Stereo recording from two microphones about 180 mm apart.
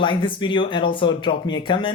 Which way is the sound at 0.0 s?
25° left (ahead or behind).